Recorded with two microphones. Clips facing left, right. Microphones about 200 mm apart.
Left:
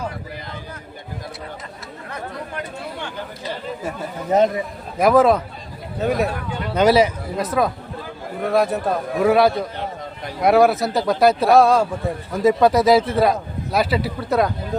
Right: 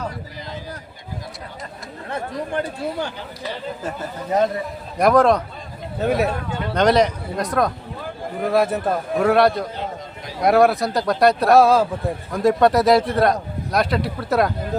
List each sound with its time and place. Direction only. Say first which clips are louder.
2.0 s chatter: right 5 dB; 30° right (ahead or behind)
4.9 s speech: left 1 dB; centre (ahead or behind)